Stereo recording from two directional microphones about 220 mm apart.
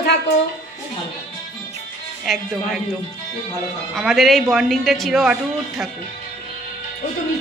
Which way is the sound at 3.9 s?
Centre (ahead or behind).